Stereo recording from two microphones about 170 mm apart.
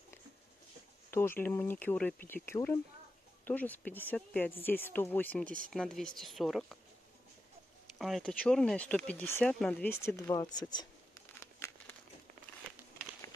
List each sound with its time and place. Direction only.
1.1 s speech: 15° left (ahead or behind)
8.0 s speech: centre (ahead or behind)
10.0 s speech: 20° left (ahead or behind)
11.3 s crumpling: 10° left (ahead or behind)